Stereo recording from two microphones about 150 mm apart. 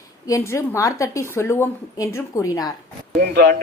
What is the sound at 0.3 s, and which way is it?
A woman's voice, 20° left (ahead or behind).